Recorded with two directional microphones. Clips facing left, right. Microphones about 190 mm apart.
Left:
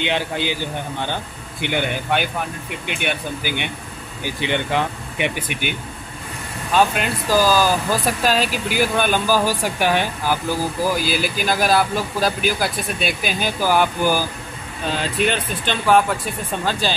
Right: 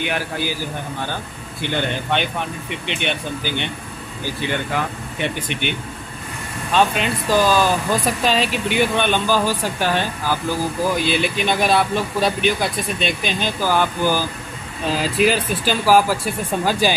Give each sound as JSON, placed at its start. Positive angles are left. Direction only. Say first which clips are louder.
{"t": 0.0, "sound": "a man's voice", "louder": "left 1 dB", "side_deg": 20}
{"t": 10.9, "sound": "speech", "louder": "right 1 dB", "side_deg": 5}
{"t": 14.9, "sound": "speech", "louder": "right 3 dB", "side_deg": -5}